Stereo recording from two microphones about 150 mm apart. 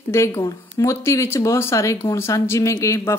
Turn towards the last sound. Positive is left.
turn(degrees=20)  # may be behind; listen again after turning